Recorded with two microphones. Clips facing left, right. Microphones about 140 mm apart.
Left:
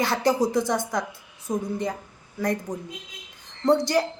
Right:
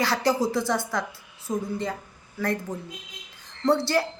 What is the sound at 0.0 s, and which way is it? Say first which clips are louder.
A woman's voice: left 1 dB; 20° left (ahead or behind).